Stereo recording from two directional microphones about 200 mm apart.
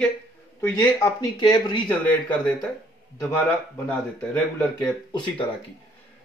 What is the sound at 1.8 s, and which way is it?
Speech, 5° left (ahead or behind).